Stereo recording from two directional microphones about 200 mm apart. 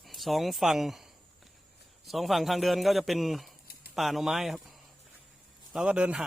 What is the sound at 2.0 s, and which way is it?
Speech, centre (ahead or behind).